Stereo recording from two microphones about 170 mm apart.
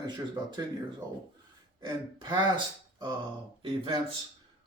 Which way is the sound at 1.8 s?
25° right (ahead or behind).